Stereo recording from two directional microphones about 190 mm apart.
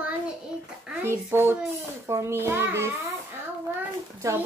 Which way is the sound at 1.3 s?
10° right (ahead or behind).